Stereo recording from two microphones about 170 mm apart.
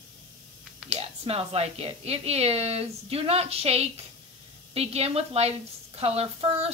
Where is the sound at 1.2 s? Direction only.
35° right (ahead or behind).